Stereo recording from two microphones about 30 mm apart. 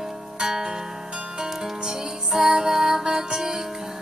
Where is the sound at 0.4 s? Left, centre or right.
Right.